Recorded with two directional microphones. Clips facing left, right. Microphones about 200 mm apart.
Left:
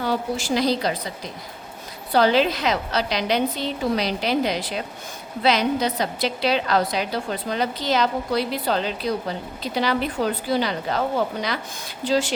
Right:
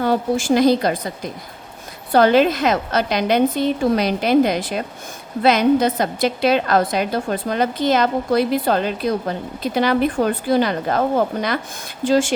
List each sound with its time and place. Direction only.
0.0 s a woman's voice: 50° right (ahead or behind)